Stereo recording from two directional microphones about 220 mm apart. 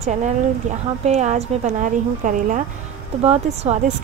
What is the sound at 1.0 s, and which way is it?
A woman's voice, 30° right (ahead or behind).